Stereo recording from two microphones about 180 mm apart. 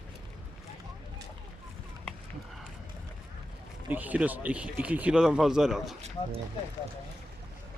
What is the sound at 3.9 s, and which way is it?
Speech, 10° right (ahead or behind).